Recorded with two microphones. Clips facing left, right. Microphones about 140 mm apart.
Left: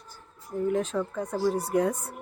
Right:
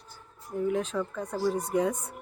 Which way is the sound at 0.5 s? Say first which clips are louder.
Left 2 dB; 5° right (ahead or behind).